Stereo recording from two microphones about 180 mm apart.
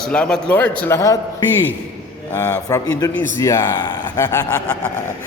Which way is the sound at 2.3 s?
15° left (ahead or behind).